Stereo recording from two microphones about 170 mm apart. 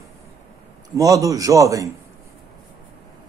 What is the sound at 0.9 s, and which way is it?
Speech, 20° right (ahead or behind).